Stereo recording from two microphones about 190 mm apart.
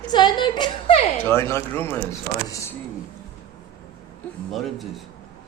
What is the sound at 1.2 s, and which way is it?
Speech, 10° left (ahead or behind).